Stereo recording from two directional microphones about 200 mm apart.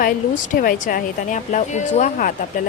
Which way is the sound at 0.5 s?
45° left (ahead or behind).